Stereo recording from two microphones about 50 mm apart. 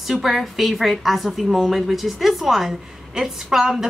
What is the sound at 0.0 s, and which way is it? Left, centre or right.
A woman's voice, centre.